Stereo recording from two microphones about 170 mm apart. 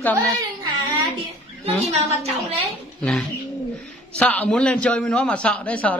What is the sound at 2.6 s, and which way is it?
A man's voice, 5° left (ahead or behind).